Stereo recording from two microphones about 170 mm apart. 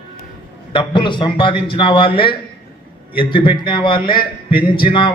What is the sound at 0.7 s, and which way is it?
A man's voice, 30° left (ahead or behind).